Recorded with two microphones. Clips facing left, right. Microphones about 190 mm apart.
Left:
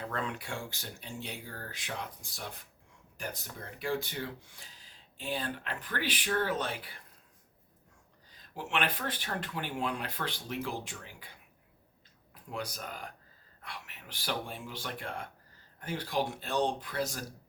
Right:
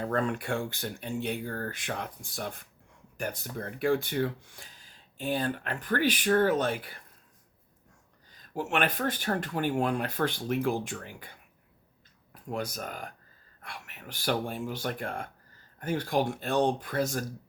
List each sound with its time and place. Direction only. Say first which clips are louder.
0.0 s speech: right 8 dB; 45° right (ahead or behind)
8.5 s speech: right 5 dB; 45° right (ahead or behind)